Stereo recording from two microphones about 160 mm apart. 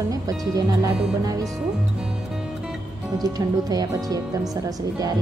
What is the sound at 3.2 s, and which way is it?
A woman's voice, 20° right (ahead or behind).